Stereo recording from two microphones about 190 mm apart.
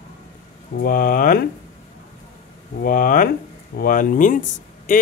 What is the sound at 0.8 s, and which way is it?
Speech, 50° left (ahead or behind).